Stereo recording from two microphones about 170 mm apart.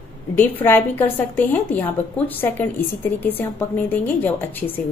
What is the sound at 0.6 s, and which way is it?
A woman's voice, 10° left (ahead or behind).